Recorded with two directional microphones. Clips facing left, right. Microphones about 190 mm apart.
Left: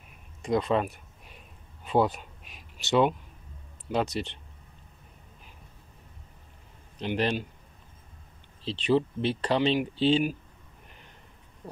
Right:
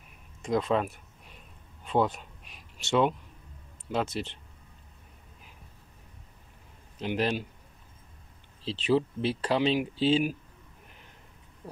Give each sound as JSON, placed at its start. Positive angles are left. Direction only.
{"t": 0.4, "sound": "speech", "side_deg": 0}
{"t": 1.9, "sound": "a sound", "side_deg": 5}
{"t": 3.9, "sound": "speech", "side_deg": 0}
{"t": 7.0, "sound": "speech", "side_deg": -5}
{"t": 8.6, "sound": "speech", "side_deg": -5}
{"t": 11.6, "sound": "a sound", "side_deg": 0}